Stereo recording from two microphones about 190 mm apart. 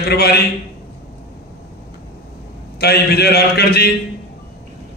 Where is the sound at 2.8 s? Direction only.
55° left (ahead or behind).